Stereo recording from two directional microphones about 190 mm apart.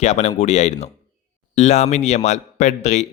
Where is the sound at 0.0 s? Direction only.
35° left (ahead or behind).